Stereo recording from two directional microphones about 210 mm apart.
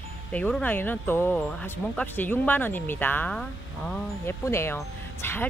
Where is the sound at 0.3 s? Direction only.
5° left (ahead or behind).